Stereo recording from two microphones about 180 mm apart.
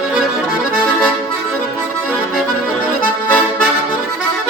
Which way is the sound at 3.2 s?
5° left (ahead or behind).